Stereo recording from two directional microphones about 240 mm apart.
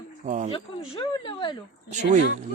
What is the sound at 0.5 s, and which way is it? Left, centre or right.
Speech, left.